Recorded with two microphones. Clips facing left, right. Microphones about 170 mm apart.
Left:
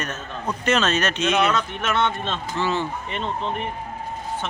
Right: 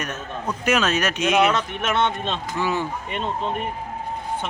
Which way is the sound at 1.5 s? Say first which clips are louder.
Right 1 dB; 25° right (ahead or behind).